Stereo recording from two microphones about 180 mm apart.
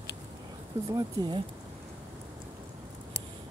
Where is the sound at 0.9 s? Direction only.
20° right (ahead or behind).